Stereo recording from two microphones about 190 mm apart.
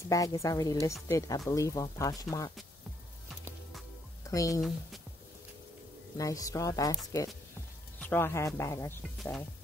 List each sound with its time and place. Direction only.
0.1 s speech: 15° left (ahead or behind)
4.3 s speech: 15° left (ahead or behind)
4.6 s speech: centre (ahead or behind)
6.1 s speech: 20° left (ahead or behind)
8.0 s speech: 10° left (ahead or behind)